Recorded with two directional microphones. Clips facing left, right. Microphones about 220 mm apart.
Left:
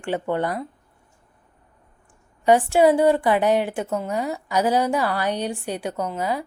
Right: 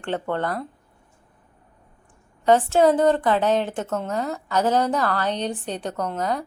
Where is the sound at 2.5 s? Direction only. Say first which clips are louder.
Left 1 dB; 15° left (ahead or behind).